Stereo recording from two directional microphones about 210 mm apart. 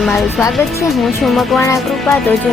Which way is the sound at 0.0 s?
Centre (ahead or behind).